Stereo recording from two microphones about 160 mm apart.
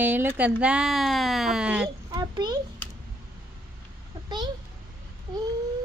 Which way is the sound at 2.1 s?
25° right (ahead or behind).